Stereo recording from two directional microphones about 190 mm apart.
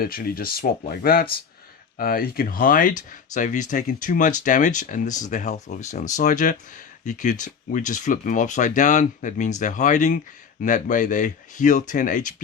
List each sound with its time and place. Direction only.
0.0 s speech: 50° left (ahead or behind)